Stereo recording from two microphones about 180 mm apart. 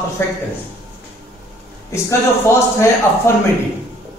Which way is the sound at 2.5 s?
15° left (ahead or behind).